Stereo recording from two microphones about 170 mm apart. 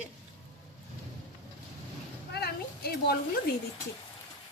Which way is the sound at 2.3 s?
70° left (ahead or behind).